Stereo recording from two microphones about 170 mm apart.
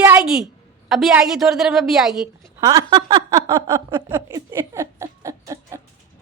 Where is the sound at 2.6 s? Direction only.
20° right (ahead or behind).